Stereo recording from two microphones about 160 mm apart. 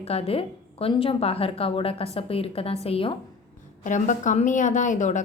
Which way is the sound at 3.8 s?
50° left (ahead or behind).